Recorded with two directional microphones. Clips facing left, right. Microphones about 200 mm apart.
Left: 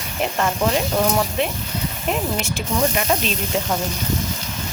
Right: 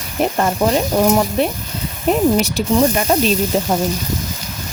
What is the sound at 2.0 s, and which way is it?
Speech, 40° right (ahead or behind).